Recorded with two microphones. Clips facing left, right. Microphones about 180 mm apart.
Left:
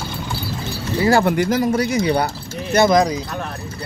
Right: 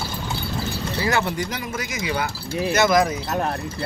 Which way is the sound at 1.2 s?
50° left (ahead or behind).